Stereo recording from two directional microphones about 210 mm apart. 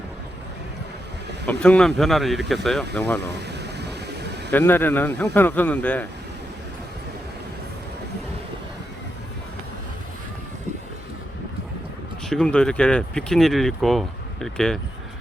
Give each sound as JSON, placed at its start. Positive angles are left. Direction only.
{"t": 1.5, "sound": "a man's voice", "side_deg": 5}
{"t": 3.6, "sound": "a sound", "side_deg": -50}
{"t": 4.5, "sound": "a man's voice", "side_deg": 10}
{"t": 12.3, "sound": "speech", "side_deg": 5}